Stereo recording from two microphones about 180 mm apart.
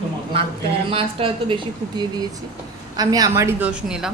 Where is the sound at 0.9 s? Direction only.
30° right (ahead or behind).